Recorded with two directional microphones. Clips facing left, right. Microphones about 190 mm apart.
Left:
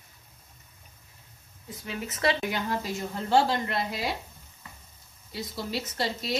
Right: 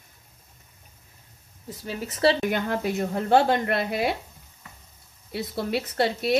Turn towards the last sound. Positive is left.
turn(degrees=-60)  # may be behind; listen again after turning